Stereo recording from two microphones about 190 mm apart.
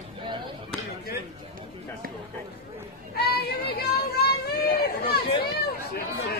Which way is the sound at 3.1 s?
55° left (ahead or behind).